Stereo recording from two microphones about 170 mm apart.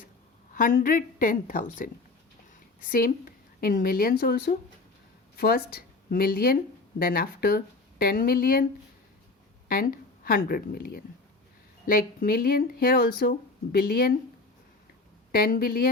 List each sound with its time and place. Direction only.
0.5 s a woman's voice: 50° left (ahead or behind)
9.6 s a woman's voice: 55° left (ahead or behind)
15.3 s a woman's voice: 60° left (ahead or behind)